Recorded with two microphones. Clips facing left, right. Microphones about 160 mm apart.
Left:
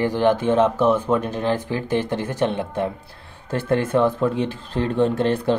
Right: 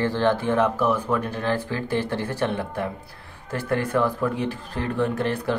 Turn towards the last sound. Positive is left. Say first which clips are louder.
# left 5 dB
turn(degrees=25)  # may be behind; listen again after turning